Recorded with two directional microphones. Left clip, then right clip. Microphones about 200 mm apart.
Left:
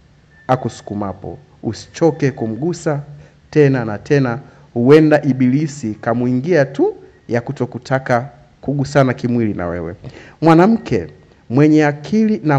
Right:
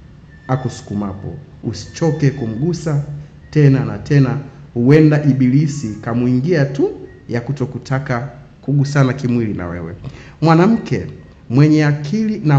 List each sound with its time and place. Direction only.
0.5 s a man's voice: 35° left (ahead or behind)
10.4 s speech: 15° left (ahead or behind)
10.8 s a man's voice: 30° left (ahead or behind)